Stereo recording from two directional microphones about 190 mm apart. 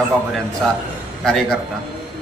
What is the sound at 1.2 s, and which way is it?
Speech, centre (ahead or behind).